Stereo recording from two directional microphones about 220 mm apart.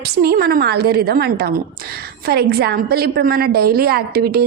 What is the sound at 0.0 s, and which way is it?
A woman's voice, 45° right (ahead or behind).